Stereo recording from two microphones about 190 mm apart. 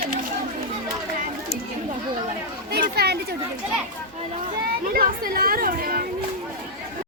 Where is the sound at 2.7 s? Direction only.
55° right (ahead or behind).